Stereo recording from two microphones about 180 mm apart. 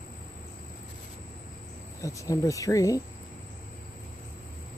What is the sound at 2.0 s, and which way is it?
Speech, 20° left (ahead or behind).